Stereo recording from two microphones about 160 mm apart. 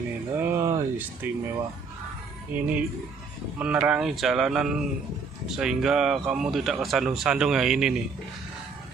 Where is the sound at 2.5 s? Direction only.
10° right (ahead or behind).